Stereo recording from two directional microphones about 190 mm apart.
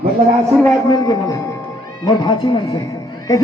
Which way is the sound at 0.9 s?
20° left (ahead or behind).